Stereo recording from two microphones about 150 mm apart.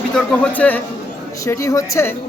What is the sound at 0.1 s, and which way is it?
A man's voice, 5° left (ahead or behind).